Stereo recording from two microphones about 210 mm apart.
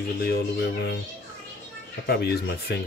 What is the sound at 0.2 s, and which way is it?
Speech, 50° left (ahead or behind).